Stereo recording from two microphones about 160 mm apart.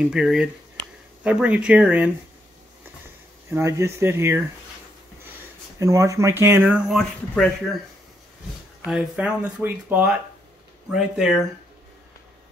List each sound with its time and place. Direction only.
0.0 s speech: 5° right (ahead or behind)
3.4 s speech: 15° right (ahead or behind)
5.8 s speech: 20° right (ahead or behind); by 7.4 s centre (ahead or behind)
8.8 s speech: 5° right (ahead or behind)